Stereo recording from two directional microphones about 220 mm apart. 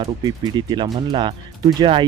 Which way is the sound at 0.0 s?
20° right (ahead or behind).